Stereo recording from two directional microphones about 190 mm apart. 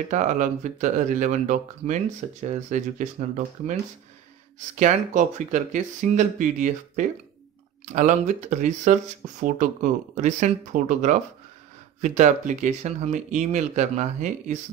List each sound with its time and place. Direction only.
0.1 s speech: 40° right (ahead or behind)
4.7 s speech: 40° right (ahead or behind)